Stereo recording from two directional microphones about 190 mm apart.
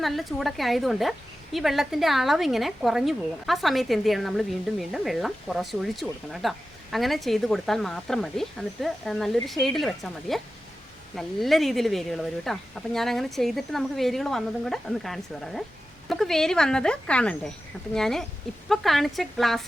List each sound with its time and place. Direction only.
0.0 s a woman's voice: centre (ahead or behind)